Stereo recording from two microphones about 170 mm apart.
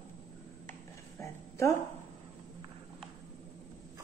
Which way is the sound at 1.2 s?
15° left (ahead or behind).